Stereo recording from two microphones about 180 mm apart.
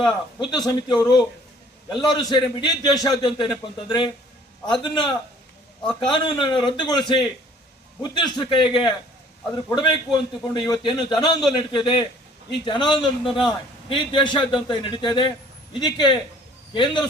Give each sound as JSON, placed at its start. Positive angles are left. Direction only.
{"t": 0.0, "sound": "a man's voice", "side_deg": 25}